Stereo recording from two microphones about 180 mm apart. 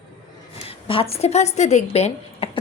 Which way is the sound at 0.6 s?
30° left (ahead or behind).